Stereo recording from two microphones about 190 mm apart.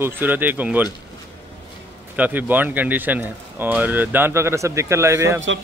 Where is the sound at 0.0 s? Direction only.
10° right (ahead or behind).